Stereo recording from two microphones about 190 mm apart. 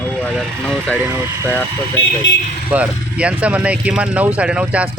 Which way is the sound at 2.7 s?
5° right (ahead or behind).